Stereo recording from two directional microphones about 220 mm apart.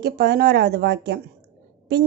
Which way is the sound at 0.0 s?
45° right (ahead or behind).